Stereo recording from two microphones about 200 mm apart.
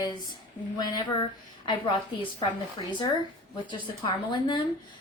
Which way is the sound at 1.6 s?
25° left (ahead or behind).